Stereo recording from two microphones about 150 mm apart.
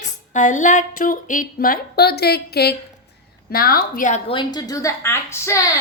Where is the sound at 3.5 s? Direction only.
80° left; by 4.2 s 60° left (ahead or behind).